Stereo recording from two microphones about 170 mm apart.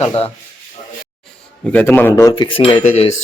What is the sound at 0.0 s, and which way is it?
Speech, 35° left (ahead or behind).